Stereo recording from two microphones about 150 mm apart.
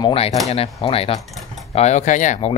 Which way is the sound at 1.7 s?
50° left (ahead or behind).